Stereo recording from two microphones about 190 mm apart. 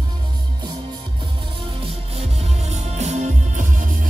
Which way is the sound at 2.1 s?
35° right (ahead or behind).